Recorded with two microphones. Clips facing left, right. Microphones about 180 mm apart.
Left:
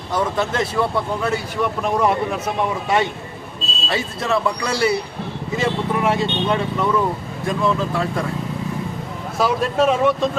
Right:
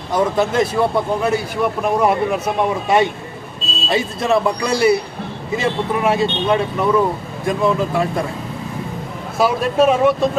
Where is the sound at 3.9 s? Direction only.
15° right (ahead or behind).